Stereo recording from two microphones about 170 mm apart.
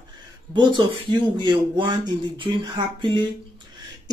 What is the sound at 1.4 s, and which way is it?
Speech, 25° right (ahead or behind).